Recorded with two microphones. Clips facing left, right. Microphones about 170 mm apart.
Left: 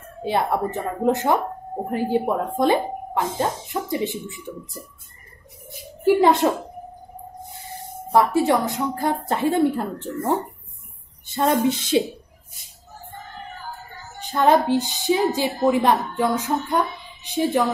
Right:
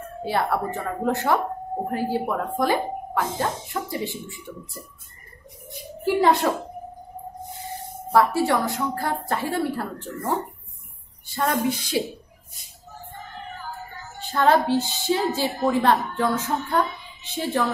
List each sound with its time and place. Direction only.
0.2 s speech: 20° left (ahead or behind)
6.2 s speech: 20° left (ahead or behind)
8.1 s speech: 20° left (ahead or behind)
11.2 s a woman's voice: 20° left (ahead or behind)
14.2 s a woman's voice: 15° left (ahead or behind)